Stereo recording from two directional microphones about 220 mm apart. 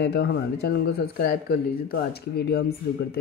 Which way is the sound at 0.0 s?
50° left (ahead or behind).